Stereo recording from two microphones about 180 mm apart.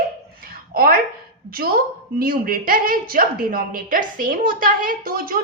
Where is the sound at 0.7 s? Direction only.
55° right (ahead or behind).